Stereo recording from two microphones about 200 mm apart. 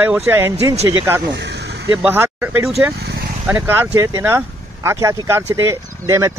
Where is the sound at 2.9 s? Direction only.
55° right (ahead or behind).